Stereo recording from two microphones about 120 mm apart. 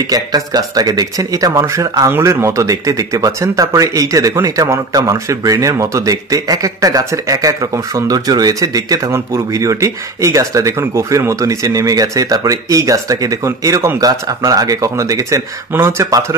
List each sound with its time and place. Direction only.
0.1 s speech: 35° right (ahead or behind)